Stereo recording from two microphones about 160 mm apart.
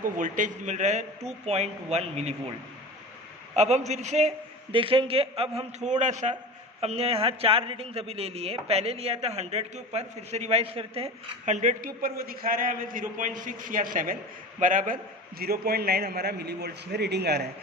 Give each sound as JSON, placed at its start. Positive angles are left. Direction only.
{"t": 0.0, "sound": "a man's voice", "side_deg": -55}
{"t": 3.5, "sound": "a man's voice", "side_deg": -45}
{"t": 4.7, "sound": "speech", "side_deg": -35}
{"t": 5.9, "sound": "a man's voice", "side_deg": -50}
{"t": 15.4, "sound": "a man's voice", "side_deg": -75}